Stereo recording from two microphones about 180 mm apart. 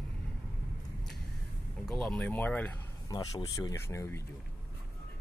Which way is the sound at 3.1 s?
20° left (ahead or behind).